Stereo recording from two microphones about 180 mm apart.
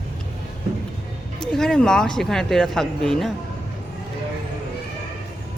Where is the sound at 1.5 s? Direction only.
Centre (ahead or behind).